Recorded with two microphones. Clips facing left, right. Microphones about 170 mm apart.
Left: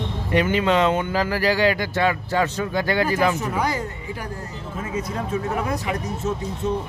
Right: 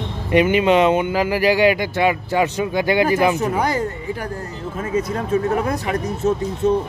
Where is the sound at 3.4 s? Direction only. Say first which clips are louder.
Right 4 dB; 55° right (ahead or behind).